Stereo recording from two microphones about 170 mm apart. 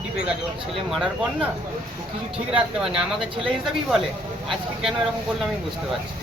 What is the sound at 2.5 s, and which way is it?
Speech, 5° right (ahead or behind).